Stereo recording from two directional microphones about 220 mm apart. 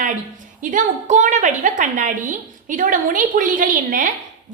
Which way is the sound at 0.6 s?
35° right (ahead or behind).